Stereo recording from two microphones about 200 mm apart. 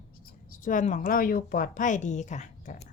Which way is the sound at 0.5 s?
40° left (ahead or behind).